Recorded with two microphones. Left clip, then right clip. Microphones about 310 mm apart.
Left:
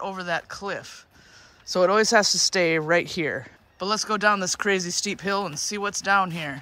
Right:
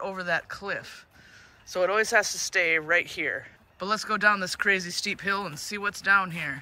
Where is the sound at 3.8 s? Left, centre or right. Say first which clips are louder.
Left 1 dB; centre.